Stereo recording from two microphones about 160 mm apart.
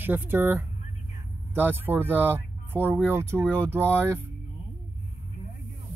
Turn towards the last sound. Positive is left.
turn(degrees=-15)  # may be behind; listen again after turning